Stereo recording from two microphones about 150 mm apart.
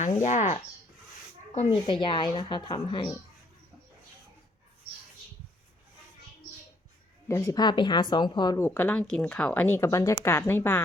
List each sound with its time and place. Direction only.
0.0 s speech: 55° left (ahead or behind)
1.5 s speech: 35° left (ahead or behind)
7.3 s speech: 20° left (ahead or behind)
8.5 s speech: 15° left (ahead or behind)